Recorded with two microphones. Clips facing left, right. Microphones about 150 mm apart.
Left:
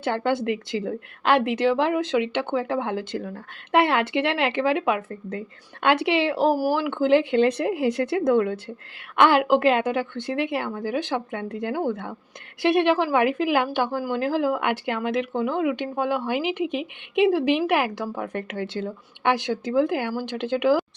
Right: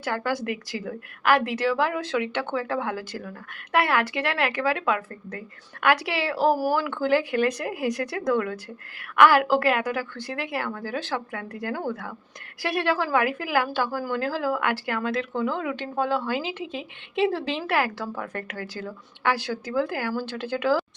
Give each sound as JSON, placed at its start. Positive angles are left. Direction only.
{"t": 0.0, "sound": "speech", "side_deg": 25}